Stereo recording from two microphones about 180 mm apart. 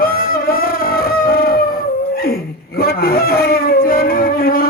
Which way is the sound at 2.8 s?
55° left (ahead or behind).